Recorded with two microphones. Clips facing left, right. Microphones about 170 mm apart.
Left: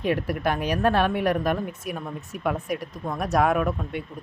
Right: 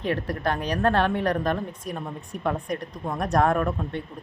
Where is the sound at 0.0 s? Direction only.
10° left (ahead or behind).